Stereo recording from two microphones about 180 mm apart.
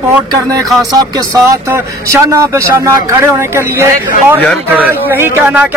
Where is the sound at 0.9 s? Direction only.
20° right (ahead or behind).